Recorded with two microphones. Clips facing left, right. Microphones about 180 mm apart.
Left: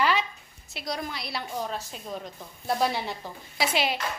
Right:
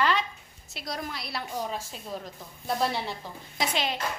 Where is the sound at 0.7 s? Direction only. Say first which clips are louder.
Left 2 dB; centre (ahead or behind).